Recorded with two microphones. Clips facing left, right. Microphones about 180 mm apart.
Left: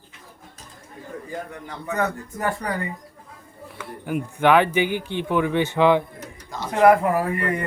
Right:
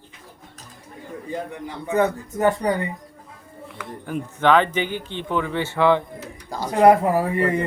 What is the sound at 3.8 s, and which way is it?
Speech, 10° left (ahead or behind).